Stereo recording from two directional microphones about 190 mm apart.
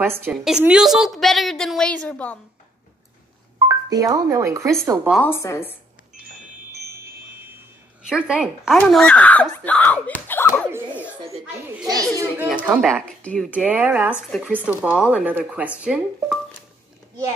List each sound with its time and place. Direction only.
0.0 s a woman's voice: 10° right (ahead or behind); by 2.3 s 5° left (ahead or behind)
3.5 s speech: 20° right (ahead or behind)
5.2 s speech: 15° left (ahead or behind)
8.0 s a woman's voice: 5° right (ahead or behind)
10.2 s a sound: 10° left (ahead or behind)
10.7 s a sound: 15° right (ahead or behind)
11.9 s speech: 15° right (ahead or behind)
12.9 s a woman's voice: 5° left (ahead or behind)
13.5 s a woman's voice: 10° right (ahead or behind)